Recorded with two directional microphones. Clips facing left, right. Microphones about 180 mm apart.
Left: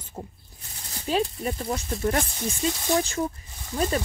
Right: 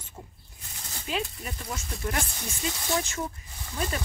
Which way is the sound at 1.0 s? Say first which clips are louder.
Left 7 dB; 35° left (ahead or behind).